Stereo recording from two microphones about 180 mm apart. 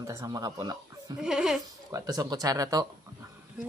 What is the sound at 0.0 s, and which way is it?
Speech, 15° right (ahead or behind).